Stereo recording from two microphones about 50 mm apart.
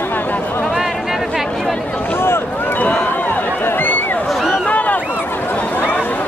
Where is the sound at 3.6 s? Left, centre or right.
Left.